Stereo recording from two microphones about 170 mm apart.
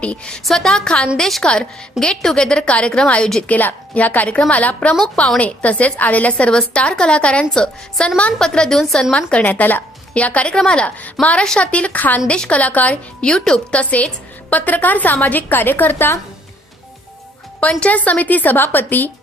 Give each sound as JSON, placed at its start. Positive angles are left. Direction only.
{"t": 0.0, "sound": "a woman's voice", "side_deg": 5}
{"t": 17.6, "sound": "speech", "side_deg": 5}